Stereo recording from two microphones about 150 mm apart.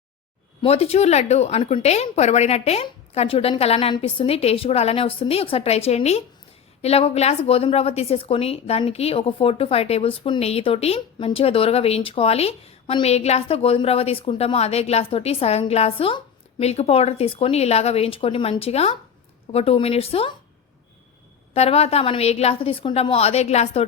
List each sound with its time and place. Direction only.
0.6 s a woman's voice: 40° left (ahead or behind)
21.5 s a woman's voice: 45° left (ahead or behind)